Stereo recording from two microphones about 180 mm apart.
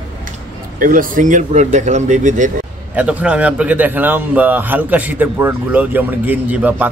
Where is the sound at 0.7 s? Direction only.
50° right (ahead or behind).